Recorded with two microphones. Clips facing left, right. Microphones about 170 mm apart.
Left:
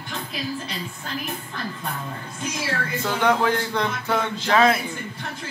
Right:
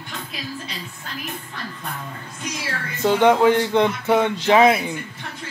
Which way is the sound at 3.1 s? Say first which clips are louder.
Right 6 dB; 20° right (ahead or behind).